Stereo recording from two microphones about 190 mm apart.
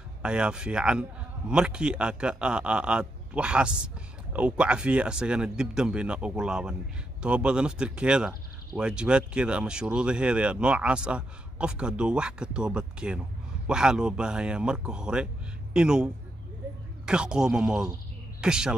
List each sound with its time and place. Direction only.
0.2 s a man's voice: 5° right (ahead or behind)